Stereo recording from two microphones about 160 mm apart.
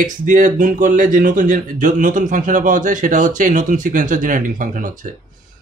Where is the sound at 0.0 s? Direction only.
55° right (ahead or behind).